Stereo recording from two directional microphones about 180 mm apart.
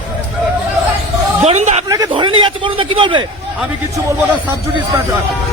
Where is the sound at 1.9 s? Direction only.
20° right (ahead or behind).